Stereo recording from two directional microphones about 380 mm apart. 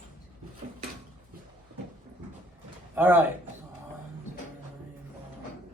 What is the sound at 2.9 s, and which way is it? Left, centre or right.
Speech, centre.